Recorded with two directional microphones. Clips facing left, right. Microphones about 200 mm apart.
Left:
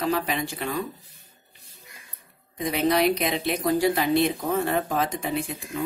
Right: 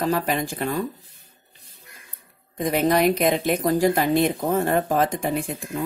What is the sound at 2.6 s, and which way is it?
Speech, 45° right (ahead or behind).